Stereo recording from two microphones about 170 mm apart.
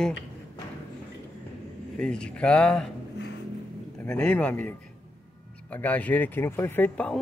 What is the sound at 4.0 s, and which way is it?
Speech, 5° left (ahead or behind).